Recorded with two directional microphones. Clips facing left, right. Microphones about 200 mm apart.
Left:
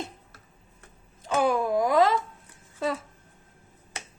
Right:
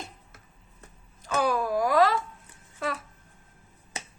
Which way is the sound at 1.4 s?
20° left (ahead or behind).